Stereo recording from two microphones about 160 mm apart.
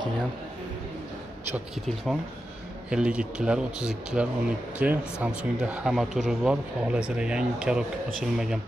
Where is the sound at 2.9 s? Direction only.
5° right (ahead or behind).